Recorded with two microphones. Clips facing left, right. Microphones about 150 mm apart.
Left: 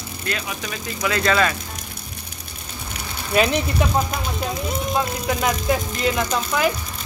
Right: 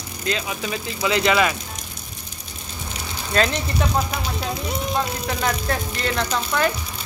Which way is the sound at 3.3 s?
10° left (ahead or behind).